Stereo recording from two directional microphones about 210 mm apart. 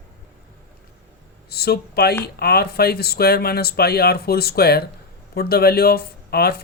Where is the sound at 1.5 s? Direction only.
50° left (ahead or behind).